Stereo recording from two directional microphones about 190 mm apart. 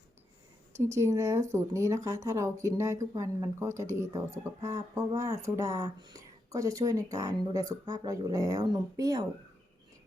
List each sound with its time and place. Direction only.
0.8 s speech: 15° right (ahead or behind)